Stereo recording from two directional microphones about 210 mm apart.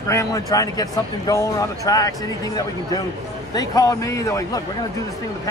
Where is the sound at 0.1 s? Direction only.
15° left (ahead or behind).